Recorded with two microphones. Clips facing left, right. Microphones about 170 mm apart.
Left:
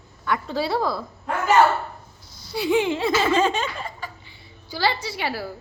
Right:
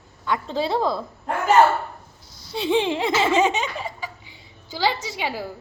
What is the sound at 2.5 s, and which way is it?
Laughter, 25° right (ahead or behind).